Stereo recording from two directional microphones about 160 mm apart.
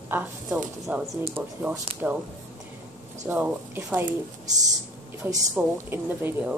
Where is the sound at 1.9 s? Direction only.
35° right (ahead or behind).